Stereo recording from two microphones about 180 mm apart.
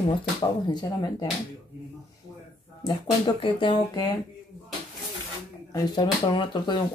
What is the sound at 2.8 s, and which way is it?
Speech, 25° left (ahead or behind).